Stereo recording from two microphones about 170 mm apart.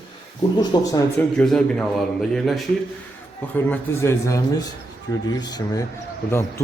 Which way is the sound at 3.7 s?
15° left (ahead or behind).